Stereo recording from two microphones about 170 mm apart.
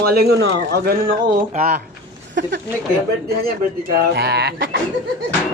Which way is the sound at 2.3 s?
90° right.